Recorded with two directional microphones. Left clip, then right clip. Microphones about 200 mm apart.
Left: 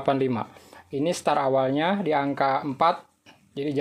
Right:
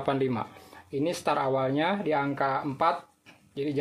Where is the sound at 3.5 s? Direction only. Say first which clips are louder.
Left 2 dB; 30° left (ahead or behind).